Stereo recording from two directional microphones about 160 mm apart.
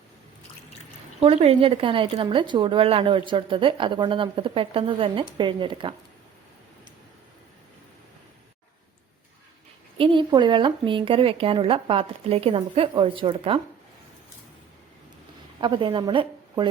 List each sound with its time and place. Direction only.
1.2 s a woman's voice: 40° right (ahead or behind)
10.0 s a woman's voice: 30° right (ahead or behind)
15.6 s a woman's voice: 30° right (ahead or behind)